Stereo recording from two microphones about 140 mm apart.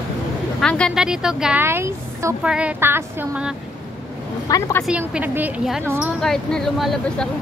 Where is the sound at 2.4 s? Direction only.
10° right (ahead or behind).